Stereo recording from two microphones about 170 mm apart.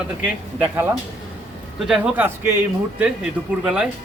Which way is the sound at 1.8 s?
5° right (ahead or behind).